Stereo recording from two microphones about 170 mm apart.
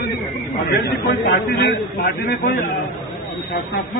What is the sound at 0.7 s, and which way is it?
A man's voice, 80° left.